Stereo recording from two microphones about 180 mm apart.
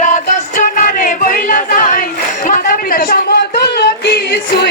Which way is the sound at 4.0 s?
70° left (ahead or behind).